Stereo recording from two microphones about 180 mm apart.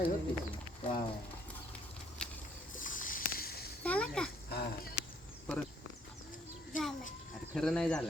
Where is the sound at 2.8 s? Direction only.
50° left (ahead or behind).